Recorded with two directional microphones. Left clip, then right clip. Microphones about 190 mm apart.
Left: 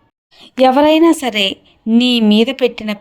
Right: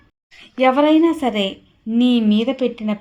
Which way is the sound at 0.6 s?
30° left (ahead or behind).